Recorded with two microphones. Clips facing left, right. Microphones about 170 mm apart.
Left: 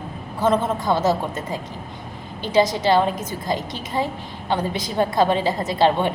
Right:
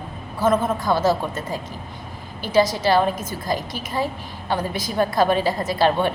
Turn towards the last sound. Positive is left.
turn(degrees=20)  # may be behind; listen again after turning